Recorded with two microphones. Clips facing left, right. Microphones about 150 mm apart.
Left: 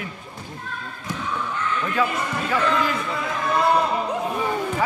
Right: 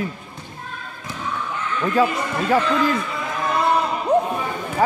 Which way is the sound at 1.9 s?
40° right (ahead or behind).